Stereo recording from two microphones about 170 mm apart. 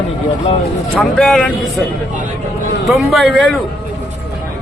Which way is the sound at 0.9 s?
Centre (ahead or behind).